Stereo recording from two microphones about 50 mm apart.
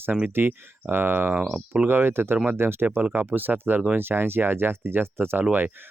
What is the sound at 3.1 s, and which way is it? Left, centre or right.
Speech, right.